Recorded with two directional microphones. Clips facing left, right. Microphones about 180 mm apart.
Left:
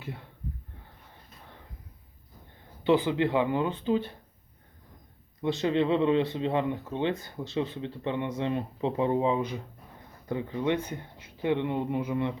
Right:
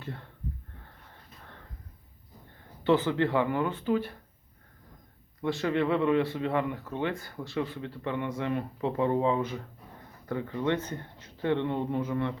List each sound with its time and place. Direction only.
0.0 s speech: 10° left (ahead or behind)
2.8 s speech: 15° left (ahead or behind)
5.4 s speech: 20° left (ahead or behind)